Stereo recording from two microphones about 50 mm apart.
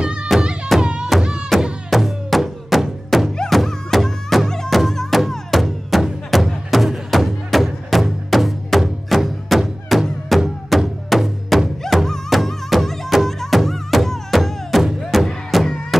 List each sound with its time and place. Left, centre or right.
0.0 s music: centre
1.5 s music: centre